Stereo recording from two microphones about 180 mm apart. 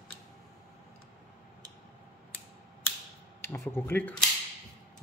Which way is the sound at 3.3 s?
15° left (ahead or behind).